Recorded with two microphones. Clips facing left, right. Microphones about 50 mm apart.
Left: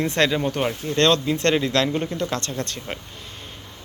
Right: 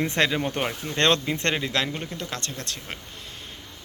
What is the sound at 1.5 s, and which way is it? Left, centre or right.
Speech, centre.